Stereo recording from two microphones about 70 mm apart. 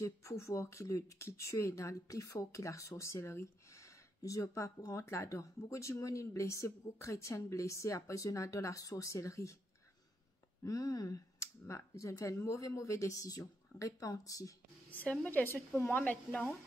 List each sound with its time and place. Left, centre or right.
0.0 s speech: left
10.6 s speech: left
11.3 s speech: left
14.9 s a woman's voice: left